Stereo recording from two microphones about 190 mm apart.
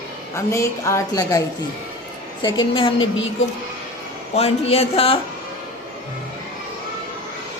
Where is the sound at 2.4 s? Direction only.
25° left (ahead or behind).